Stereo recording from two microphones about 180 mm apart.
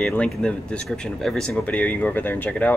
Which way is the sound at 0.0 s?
5° left (ahead or behind).